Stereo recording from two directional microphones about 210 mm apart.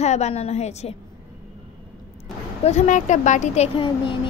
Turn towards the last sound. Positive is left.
turn(degrees=25)  # may be behind; listen again after turning